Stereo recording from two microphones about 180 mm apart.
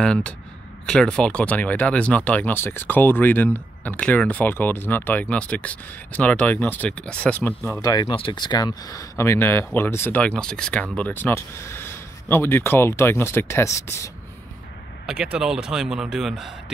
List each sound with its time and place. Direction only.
0.0 s a man's voice: 5° left (ahead or behind)
7.8 s speech: 20° left (ahead or behind)
15.0 s a man's voice: 5° right (ahead or behind)